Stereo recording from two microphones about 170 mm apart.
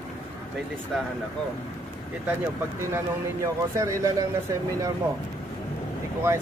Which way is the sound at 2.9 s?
20° right (ahead or behind).